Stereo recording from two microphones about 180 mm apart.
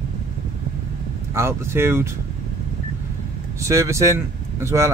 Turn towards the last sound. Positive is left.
turn(degrees=-15)  # may be behind; listen again after turning